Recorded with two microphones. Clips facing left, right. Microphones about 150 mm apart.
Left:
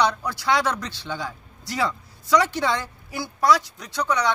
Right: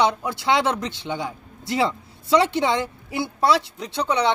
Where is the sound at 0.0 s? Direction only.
20° right (ahead or behind).